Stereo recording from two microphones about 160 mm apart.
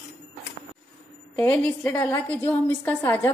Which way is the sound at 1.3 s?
10° left (ahead or behind).